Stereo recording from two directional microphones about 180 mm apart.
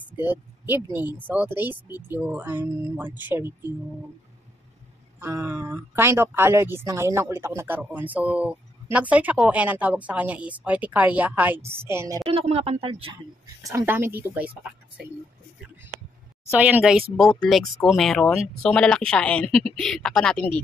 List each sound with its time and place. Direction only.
0.1 s speech: 10° right (ahead or behind)
5.2 s speech: 10° right (ahead or behind)
12.3 s speech: 35° right (ahead or behind)
13.6 s speech: 15° right (ahead or behind)
16.4 s speech: 10° right (ahead or behind)
17.3 s speech: 5° left (ahead or behind)